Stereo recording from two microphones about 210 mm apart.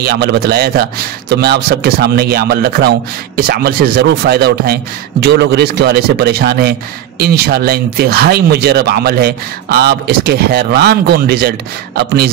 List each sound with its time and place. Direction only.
0.0 s speech: 50° right (ahead or behind)